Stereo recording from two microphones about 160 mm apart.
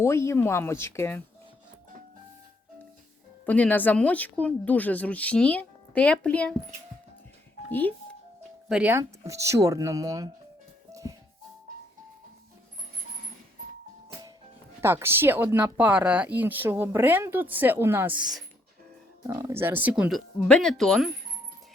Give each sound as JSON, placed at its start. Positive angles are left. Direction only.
{"t": 0.0, "sound": "speech", "side_deg": 15}
{"t": 3.4, "sound": "speech", "side_deg": 10}
{"t": 7.7, "sound": "speech", "side_deg": 10}
{"t": 8.7, "sound": "speech", "side_deg": -10}
{"t": 14.8, "sound": "speech", "side_deg": -15}
{"t": 19.5, "sound": "speech", "side_deg": -15}